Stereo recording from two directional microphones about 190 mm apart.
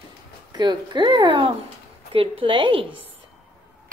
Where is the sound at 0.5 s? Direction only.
25° right (ahead or behind).